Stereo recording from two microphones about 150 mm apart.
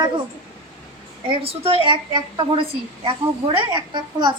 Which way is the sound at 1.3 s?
40° right (ahead or behind).